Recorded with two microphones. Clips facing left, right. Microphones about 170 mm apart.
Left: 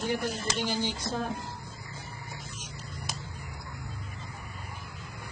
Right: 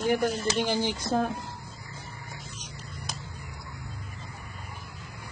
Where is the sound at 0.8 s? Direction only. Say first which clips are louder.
Right 5 dB; 55° right (ahead or behind).